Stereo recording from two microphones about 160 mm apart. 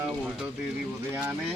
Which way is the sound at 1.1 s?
15° right (ahead or behind).